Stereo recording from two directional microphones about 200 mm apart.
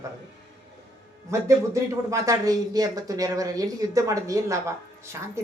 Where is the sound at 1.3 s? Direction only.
15° right (ahead or behind).